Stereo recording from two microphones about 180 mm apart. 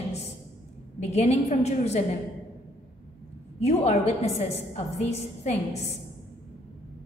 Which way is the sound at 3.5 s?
35° left (ahead or behind).